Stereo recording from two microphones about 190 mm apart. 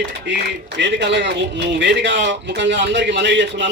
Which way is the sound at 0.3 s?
70° right (ahead or behind).